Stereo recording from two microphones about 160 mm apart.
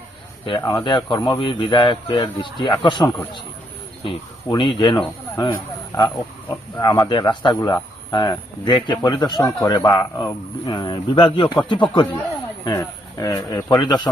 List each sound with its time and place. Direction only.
0.6 s speech: 20° left (ahead or behind)
6.5 s speech: 20° left (ahead or behind)